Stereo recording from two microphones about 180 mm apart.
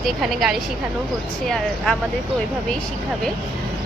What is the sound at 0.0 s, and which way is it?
A woman's voice, centre (ahead or behind).